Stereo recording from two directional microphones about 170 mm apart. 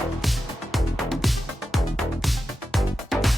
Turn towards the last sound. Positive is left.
turn(degrees=0)  # may be behind; listen again after turning